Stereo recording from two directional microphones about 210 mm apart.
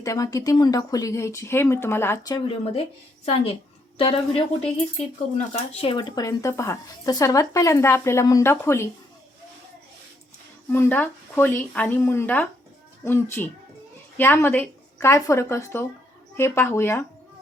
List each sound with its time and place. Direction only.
0.0 s speech: 15° left (ahead or behind)
3.9 s speech: 25° left (ahead or behind)
10.7 s speech: 10° left (ahead or behind)